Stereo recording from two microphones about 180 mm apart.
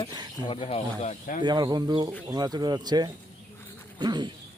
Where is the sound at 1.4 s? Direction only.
25° right (ahead or behind).